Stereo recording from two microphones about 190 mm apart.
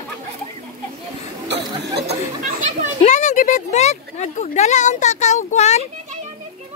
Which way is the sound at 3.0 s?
40° left (ahead or behind).